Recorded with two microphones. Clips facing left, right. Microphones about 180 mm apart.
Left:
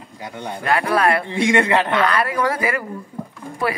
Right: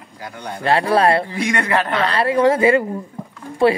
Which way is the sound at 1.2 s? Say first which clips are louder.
Left 3 dB; 25° left (ahead or behind).